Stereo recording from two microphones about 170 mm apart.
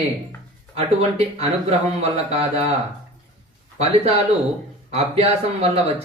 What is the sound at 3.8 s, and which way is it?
Speech, 35° right (ahead or behind).